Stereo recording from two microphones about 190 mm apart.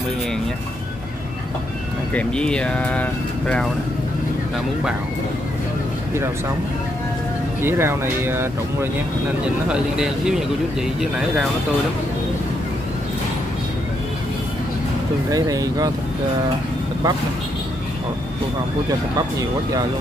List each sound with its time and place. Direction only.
2.1 s speech: 5° left (ahead or behind)
7.6 s speech: 10° right (ahead or behind)
15.3 s speech: 20° right (ahead or behind)